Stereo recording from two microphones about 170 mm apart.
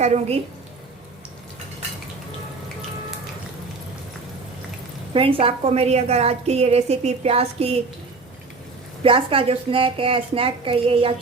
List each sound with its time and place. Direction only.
0.0 s a woman's voice: 40° right (ahead or behind)
5.1 s a woman's voice: 35° right (ahead or behind)
9.0 s a woman's voice: 30° right (ahead or behind)